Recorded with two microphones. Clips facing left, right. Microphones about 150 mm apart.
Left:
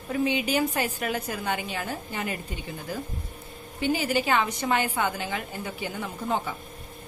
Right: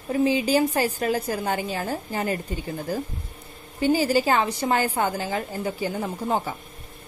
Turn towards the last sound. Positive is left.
turn(degrees=-40)  # may be behind; listen again after turning